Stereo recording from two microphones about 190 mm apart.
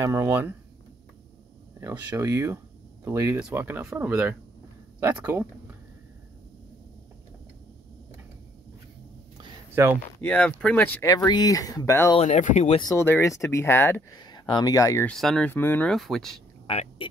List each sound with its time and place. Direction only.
0.0 s speech: 15° right (ahead or behind)
1.8 s speech: 15° right (ahead or behind)
9.4 s a sound: 15° right (ahead or behind)
10.2 s speech: 5° left (ahead or behind)
11.1 s speech: 20° left (ahead or behind)
12.2 s speech: 40° left (ahead or behind)
12.8 s speech: 15° left (ahead or behind)
14.3 s speech: 25° left (ahead or behind)
15.0 s speech: centre (ahead or behind)
16.6 s speech: 30° left (ahead or behind)